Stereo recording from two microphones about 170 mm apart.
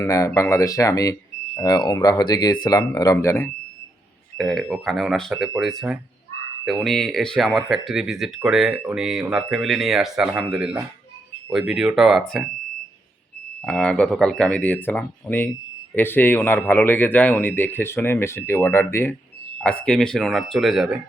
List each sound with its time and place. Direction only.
0.0 s speech: 15° left (ahead or behind)
4.4 s speech: centre (ahead or behind)
13.7 s speech: 5° left (ahead or behind)